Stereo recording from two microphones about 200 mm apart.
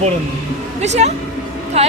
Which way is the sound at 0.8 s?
35° right (ahead or behind).